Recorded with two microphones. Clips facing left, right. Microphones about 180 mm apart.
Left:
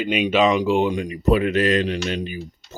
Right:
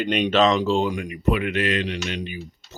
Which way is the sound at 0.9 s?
30° left (ahead or behind).